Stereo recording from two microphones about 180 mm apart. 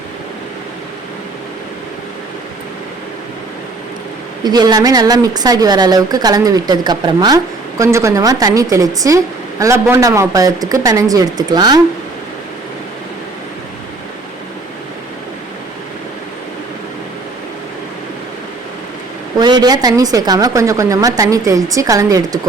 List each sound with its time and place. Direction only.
4.4 s a woman's voice: 25° right (ahead or behind)
19.4 s a woman's voice: 25° right (ahead or behind)